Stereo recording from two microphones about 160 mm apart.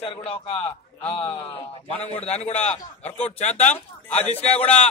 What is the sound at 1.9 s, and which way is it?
Speech, 10° left (ahead or behind).